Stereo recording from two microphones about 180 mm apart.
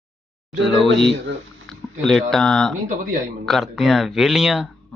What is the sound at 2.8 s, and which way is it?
Speech, 45° right (ahead or behind).